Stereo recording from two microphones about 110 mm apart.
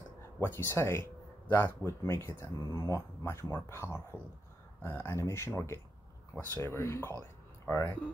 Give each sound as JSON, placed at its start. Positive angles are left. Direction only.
{"t": 0.4, "sound": "speech", "side_deg": 20}